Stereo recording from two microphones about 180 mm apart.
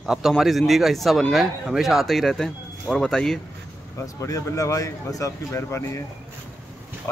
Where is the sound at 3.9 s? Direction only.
20° left (ahead or behind).